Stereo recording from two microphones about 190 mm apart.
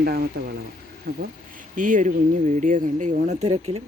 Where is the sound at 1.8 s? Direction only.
40° right (ahead or behind).